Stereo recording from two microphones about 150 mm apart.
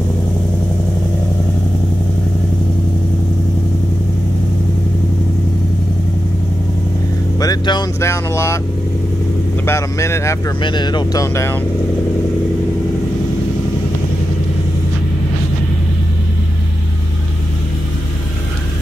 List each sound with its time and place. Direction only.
7.3 s vehicle: 25° left (ahead or behind)
8.0 s speech: 20° left (ahead or behind)
9.7 s speech: 20° left (ahead or behind)
10.6 s speech: 30° left (ahead or behind)